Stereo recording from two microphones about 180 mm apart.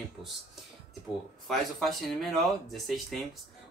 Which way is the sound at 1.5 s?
Centre (ahead or behind).